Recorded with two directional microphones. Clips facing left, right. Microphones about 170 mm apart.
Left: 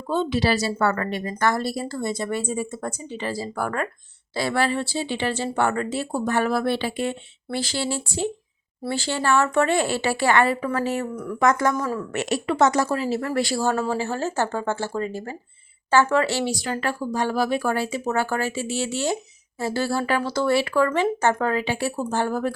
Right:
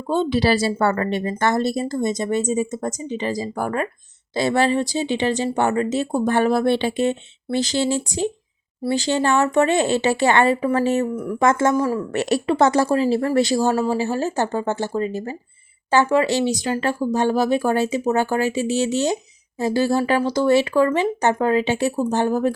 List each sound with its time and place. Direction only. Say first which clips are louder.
0.1 s speech: right 3 dB; 30° right (ahead or behind)
11.1 s speech: right 5 dB; 5° right (ahead or behind)
11.3 s speech: right 3 dB; 25° right (ahead or behind)